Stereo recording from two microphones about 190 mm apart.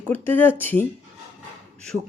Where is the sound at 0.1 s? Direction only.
10° left (ahead or behind).